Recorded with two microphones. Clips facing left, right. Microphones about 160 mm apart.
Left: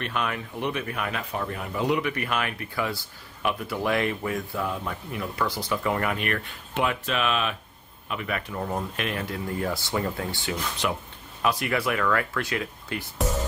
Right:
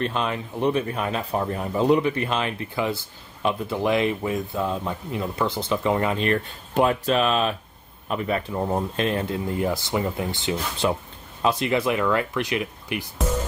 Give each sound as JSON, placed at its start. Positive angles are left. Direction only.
{"t": 0.0, "sound": "speech", "side_deg": -25}